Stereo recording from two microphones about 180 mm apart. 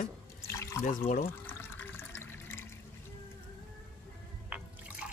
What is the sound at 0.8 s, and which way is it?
Speech, 50° left (ahead or behind).